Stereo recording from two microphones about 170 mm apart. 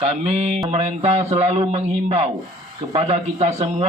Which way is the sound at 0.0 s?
40° right (ahead or behind).